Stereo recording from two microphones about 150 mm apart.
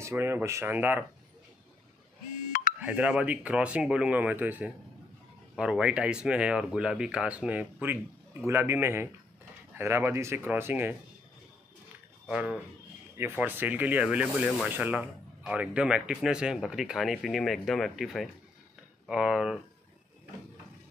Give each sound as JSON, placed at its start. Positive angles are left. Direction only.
{"t": 0.0, "sound": "speech", "side_deg": -15}
{"t": 2.8, "sound": "speech", "side_deg": -10}
{"t": 12.3, "sound": "speech", "side_deg": -5}